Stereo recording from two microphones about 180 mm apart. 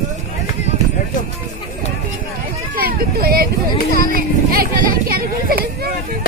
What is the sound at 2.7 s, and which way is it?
Speech, 55° right (ahead or behind).